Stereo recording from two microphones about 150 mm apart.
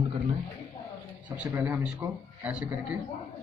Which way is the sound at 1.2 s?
10° right (ahead or behind).